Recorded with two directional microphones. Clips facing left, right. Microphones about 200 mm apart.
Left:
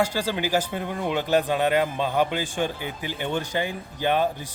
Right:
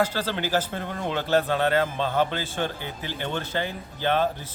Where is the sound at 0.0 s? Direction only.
10° left (ahead or behind).